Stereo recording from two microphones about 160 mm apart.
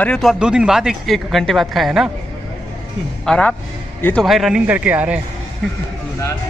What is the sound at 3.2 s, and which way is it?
A man's voice, 5° left (ahead or behind).